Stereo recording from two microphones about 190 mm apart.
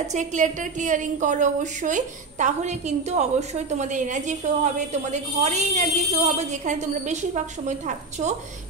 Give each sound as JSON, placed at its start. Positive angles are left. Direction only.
{"t": 0.1, "sound": "a woman's voice", "side_deg": -40}